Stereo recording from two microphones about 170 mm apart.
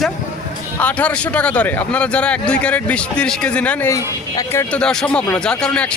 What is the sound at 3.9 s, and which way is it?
Speech, 20° left (ahead or behind).